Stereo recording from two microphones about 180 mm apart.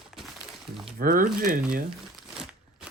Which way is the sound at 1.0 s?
50° right (ahead or behind).